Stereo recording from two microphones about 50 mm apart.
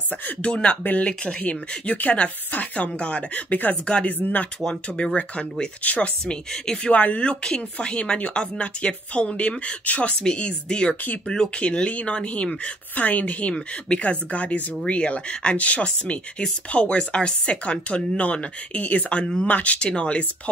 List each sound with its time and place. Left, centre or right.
0.4 s speech: centre; by 3.7 s left
3.8 s speech: left
4.2 s speech: left
4.6 s speech: centre